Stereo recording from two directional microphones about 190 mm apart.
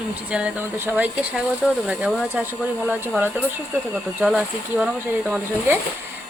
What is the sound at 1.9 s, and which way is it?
Speech, centre (ahead or behind).